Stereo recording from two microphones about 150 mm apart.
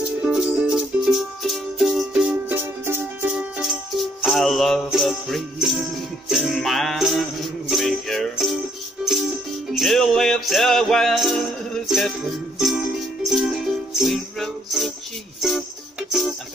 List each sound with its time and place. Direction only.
0.0 s music: 5° right (ahead or behind)
3.3 s music: 5° right (ahead or behind)
9.8 s music: centre (ahead or behind)
13.3 s music: centre (ahead or behind)